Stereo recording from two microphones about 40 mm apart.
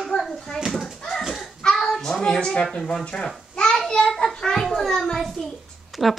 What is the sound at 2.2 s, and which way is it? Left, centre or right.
Speech, left.